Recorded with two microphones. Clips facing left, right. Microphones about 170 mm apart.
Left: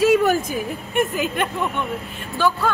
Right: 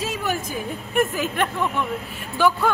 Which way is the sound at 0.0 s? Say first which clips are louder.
Left 13 dB; 65° left (ahead or behind).